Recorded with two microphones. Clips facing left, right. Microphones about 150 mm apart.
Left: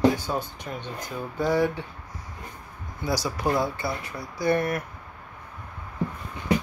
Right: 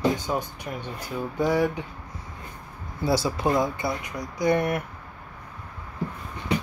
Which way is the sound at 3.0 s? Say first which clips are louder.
Right 3 dB; 25° right (ahead or behind).